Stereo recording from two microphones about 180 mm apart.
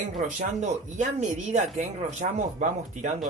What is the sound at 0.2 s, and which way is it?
Speech, 45° right (ahead or behind).